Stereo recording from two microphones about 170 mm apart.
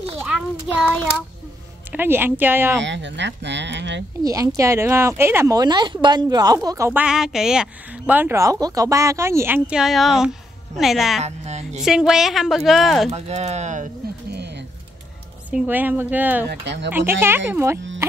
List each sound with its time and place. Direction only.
0.2 s child singing: 5° right (ahead or behind)
1.9 s speech: 10° right (ahead or behind)
2.8 s speech: 90° right
4.2 s speech: 20° right (ahead or behind)
6.9 s a woman's voice: 5° right (ahead or behind)
11.1 s speech: 40° right (ahead or behind)
11.8 s a woman's voice: centre (ahead or behind)
13.1 s speech: 40° right (ahead or behind)
15.5 s speech: 10° right (ahead or behind)
16.4 s speech: 90° right
16.9 s speech: 15° right (ahead or behind)